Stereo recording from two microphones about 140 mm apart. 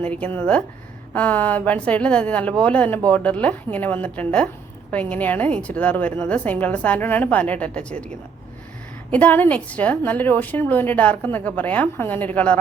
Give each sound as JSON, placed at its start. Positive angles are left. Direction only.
{"t": 0.0, "sound": "a woman's voice", "side_deg": 10}
{"t": 9.1, "sound": "a woman's voice", "side_deg": 10}